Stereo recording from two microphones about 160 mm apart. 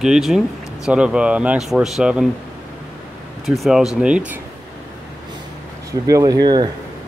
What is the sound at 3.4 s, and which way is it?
Speech, centre (ahead or behind).